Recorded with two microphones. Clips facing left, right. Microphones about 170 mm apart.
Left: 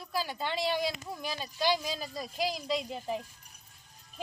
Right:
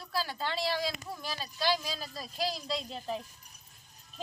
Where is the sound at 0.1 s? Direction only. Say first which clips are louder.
Left 1 dB; 15° left (ahead or behind).